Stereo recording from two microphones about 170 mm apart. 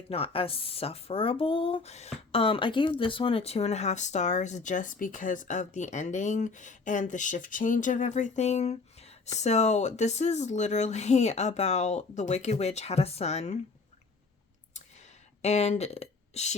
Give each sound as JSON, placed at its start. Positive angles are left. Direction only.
{"t": 0.1, "sound": "speech", "side_deg": 35}
{"t": 15.4, "sound": "speech", "side_deg": 40}